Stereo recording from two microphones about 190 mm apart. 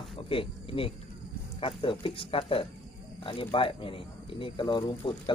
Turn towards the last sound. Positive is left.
turn(degrees=25)  # may be behind; listen again after turning